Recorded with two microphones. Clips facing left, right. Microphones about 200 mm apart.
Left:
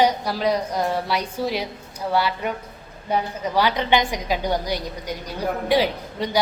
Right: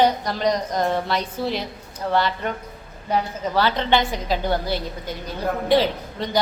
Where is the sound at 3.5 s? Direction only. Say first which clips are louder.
Even; 15° left (ahead or behind).